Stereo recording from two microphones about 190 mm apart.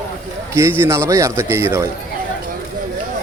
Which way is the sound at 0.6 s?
15° right (ahead or behind).